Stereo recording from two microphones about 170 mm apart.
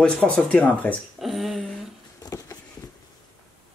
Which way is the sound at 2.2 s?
20° left (ahead or behind).